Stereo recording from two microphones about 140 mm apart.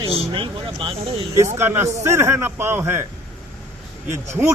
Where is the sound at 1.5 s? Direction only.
15° right (ahead or behind).